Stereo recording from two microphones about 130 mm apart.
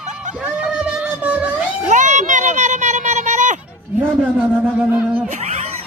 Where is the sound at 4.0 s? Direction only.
10° right (ahead or behind).